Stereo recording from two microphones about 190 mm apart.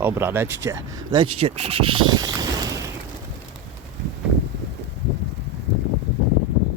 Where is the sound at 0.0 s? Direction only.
10° right (ahead or behind); by 2.0 s 30° right (ahead or behind).